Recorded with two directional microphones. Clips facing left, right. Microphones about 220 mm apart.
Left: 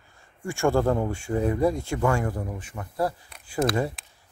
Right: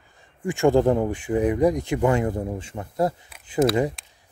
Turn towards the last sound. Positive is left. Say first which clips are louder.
# right 5 dB
turn(degrees=-20)  # may be behind; listen again after turning